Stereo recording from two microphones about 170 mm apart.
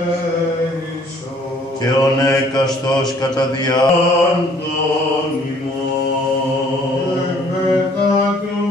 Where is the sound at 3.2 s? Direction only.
25° left (ahead or behind).